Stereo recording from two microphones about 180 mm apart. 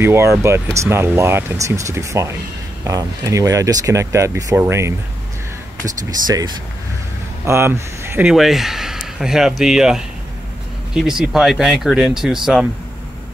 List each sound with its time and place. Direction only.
0.0 s speech: 15° right (ahead or behind)